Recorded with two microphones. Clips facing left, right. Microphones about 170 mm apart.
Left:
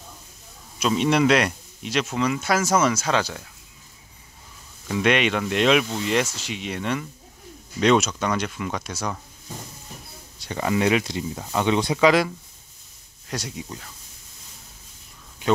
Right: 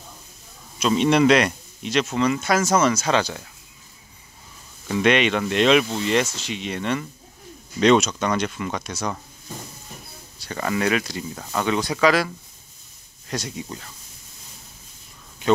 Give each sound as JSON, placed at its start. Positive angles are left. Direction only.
{"t": 0.7, "sound": "speech", "side_deg": 5}
{"t": 4.8, "sound": "speech", "side_deg": 5}
{"t": 10.4, "sound": "speech", "side_deg": 20}
{"t": 13.3, "sound": "speech", "side_deg": 5}